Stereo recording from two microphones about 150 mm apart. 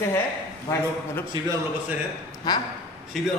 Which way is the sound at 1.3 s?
30° right (ahead or behind).